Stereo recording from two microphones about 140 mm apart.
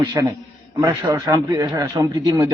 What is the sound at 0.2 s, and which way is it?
A man's voice, 25° right (ahead or behind).